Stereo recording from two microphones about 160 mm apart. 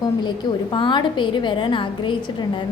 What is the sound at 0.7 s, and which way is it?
A woman's voice, 30° left (ahead or behind).